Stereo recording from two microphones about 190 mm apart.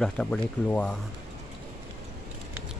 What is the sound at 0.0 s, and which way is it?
Speech, 5° left (ahead or behind).